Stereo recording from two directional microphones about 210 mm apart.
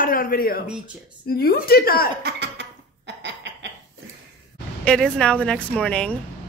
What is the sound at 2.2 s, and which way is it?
Laughter, 55° right (ahead or behind).